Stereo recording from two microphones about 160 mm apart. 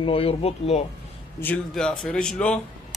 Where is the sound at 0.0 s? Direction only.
35° left (ahead or behind).